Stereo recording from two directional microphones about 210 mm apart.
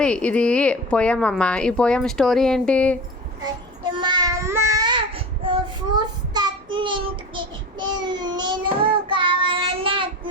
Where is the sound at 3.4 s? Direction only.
20° right (ahead or behind).